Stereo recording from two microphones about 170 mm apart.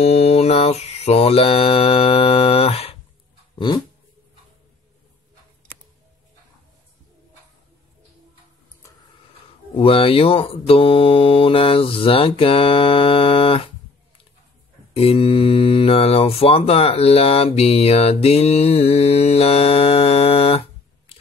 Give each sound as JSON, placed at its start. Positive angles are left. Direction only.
{"t": 0.0, "sound": "mantra", "side_deg": 35}
{"t": 3.5, "sound": "a sound", "side_deg": 30}
{"t": 9.8, "sound": "mantra", "side_deg": 35}
{"t": 15.0, "sound": "mantra", "side_deg": 35}